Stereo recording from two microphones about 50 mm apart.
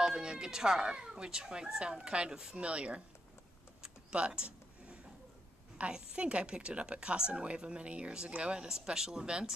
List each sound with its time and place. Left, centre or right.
0.0 s speech: centre
3.8 s a sound: centre
5.8 s a woman's voice: right